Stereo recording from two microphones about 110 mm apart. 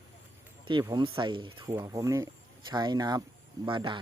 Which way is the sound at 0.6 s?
45° right (ahead or behind).